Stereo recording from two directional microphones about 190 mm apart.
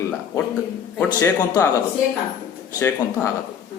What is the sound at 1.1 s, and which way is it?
Speech, 15° left (ahead or behind).